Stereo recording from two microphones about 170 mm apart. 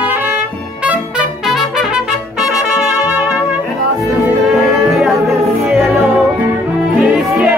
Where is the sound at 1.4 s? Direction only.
Centre (ahead or behind).